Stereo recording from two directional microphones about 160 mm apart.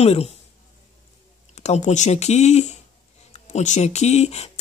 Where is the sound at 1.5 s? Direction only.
45° left (ahead or behind).